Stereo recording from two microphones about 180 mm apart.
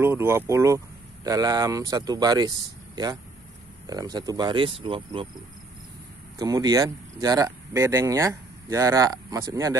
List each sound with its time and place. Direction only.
0.0 s speech: 15° right (ahead or behind)
3.8 s speech: 20° right (ahead or behind)
6.3 s speech: 20° right (ahead or behind)